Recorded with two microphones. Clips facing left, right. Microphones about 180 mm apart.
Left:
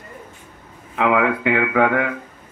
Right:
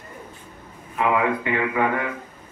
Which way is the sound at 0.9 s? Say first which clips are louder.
Left 3 dB; 85° left.